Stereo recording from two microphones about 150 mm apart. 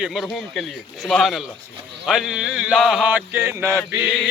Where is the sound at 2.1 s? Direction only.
5° right (ahead or behind).